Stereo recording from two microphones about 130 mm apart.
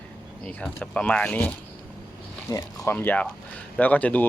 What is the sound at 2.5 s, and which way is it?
Speech, 30° left (ahead or behind).